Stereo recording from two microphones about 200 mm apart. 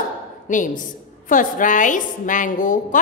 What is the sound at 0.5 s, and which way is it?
A woman's voice, 40° left (ahead or behind).